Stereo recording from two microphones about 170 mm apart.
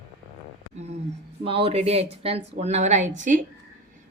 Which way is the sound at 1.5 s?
35° right (ahead or behind).